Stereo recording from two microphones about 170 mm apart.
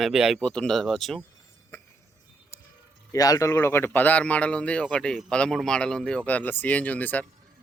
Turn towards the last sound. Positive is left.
turn(degrees=10)  # may be behind; listen again after turning